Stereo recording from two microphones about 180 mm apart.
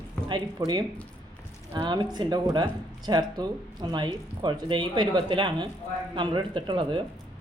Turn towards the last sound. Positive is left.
turn(degrees=-25)  # may be behind; listen again after turning